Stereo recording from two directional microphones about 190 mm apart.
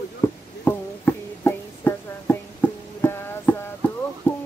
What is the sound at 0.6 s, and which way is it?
Music, 10° left (ahead or behind).